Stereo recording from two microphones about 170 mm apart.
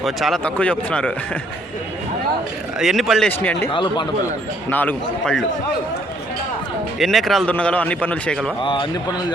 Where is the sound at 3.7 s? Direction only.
30° left (ahead or behind).